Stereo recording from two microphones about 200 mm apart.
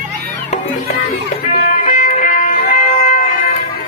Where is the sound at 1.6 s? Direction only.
35° left (ahead or behind).